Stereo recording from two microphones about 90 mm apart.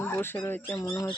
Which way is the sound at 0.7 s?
35° left (ahead or behind).